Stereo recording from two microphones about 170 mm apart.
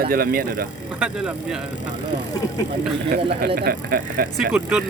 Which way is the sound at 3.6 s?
60° right (ahead or behind).